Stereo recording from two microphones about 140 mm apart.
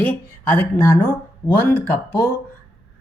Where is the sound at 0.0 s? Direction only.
10° left (ahead or behind).